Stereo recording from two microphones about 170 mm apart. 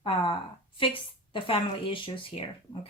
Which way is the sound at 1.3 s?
30° left (ahead or behind).